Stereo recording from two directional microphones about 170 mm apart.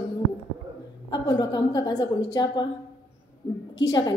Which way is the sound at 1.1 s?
25° left (ahead or behind).